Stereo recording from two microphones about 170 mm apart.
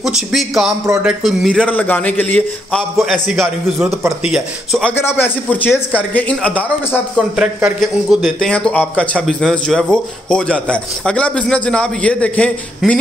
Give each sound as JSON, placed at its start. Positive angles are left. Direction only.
{"t": 0.0, "sound": "a man's voice", "side_deg": 0}
{"t": 4.9, "sound": "a man's voice", "side_deg": 15}
{"t": 7.3, "sound": "a man's voice", "side_deg": -5}